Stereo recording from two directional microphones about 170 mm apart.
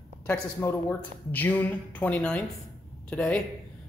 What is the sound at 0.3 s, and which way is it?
Speech, 15° left (ahead or behind).